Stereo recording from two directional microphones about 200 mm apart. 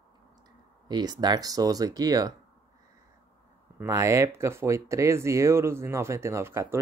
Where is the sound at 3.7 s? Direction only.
15° right (ahead or behind).